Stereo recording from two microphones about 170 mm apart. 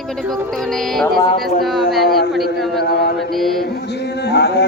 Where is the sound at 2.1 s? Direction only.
65° left (ahead or behind).